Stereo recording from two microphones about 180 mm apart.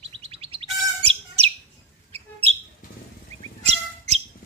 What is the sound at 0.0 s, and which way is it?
Chirp, 30° right (ahead or behind).